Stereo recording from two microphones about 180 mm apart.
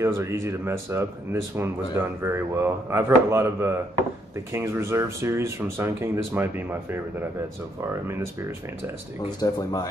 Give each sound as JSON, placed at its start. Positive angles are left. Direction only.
{"t": 0.0, "sound": "speech", "side_deg": -15}
{"t": 9.2, "sound": "speech", "side_deg": 20}